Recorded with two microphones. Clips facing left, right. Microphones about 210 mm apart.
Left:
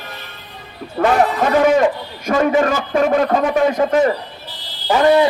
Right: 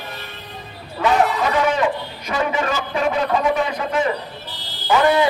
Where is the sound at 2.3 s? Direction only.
45° left (ahead or behind).